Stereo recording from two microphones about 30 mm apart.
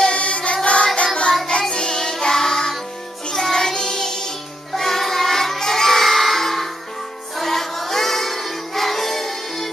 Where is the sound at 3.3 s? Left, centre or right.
Left.